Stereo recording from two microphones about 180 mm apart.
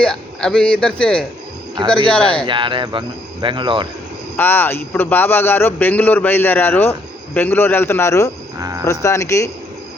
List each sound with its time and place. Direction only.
0.0 s a man's voice: 5° left (ahead or behind)
2.5 s speech: 25° right (ahead or behind)
4.4 s a man's voice: 10° left (ahead or behind)
8.5 s speech: 20° right (ahead or behind)
8.8 s a man's voice: 15° left (ahead or behind)